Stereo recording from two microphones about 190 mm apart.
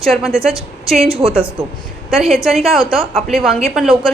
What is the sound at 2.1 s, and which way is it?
A woman's voice, centre (ahead or behind).